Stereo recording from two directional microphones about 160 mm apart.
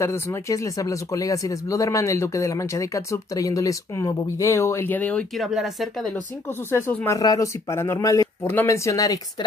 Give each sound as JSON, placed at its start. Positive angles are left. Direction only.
{"t": 0.0, "sound": "speech", "side_deg": 15}
{"t": 5.5, "sound": "speech", "side_deg": 0}
{"t": 6.7, "sound": "speech", "side_deg": 15}